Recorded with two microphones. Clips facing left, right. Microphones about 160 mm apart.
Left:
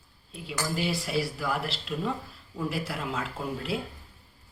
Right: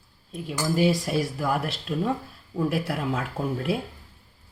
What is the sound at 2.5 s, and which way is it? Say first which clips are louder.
Speech: right 6 dB; 55° right (ahead or behind).